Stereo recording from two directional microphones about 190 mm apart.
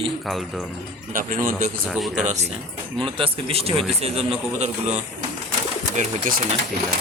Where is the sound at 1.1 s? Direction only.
45° right (ahead or behind).